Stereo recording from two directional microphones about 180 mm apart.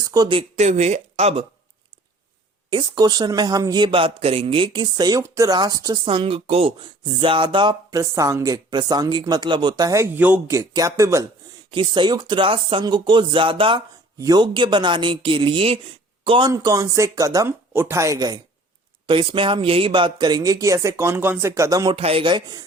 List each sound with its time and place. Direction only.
0.0 s speech: 20° right (ahead or behind)
2.6 s a man's voice: 25° right (ahead or behind)
16.5 s a man's voice: 15° right (ahead or behind)
21.9 s a man's voice: 30° right (ahead or behind)